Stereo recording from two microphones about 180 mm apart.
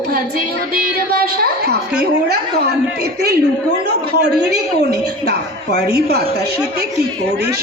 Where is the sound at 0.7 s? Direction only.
55° right (ahead or behind).